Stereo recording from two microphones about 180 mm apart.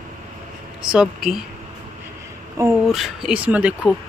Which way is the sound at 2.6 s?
15° right (ahead or behind).